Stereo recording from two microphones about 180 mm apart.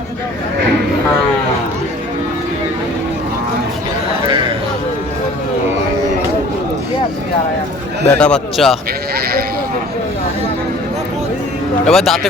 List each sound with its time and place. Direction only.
8.1 s a man's voice: 5° left (ahead or behind)
9.1 s sheep: 55° right (ahead or behind)
11.9 s a man's voice: centre (ahead or behind)